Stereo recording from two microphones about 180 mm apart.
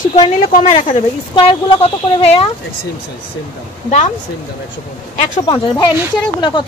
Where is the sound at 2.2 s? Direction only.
30° left (ahead or behind).